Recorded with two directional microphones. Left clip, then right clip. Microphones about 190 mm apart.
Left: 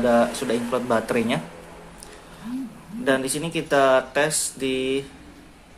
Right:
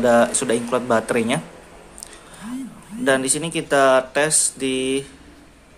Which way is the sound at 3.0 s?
15° right (ahead or behind).